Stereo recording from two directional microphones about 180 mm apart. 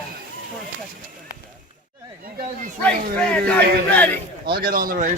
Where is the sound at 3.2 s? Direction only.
5° left (ahead or behind).